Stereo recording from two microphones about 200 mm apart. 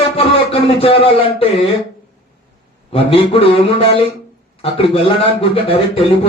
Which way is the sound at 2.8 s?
30° left (ahead or behind).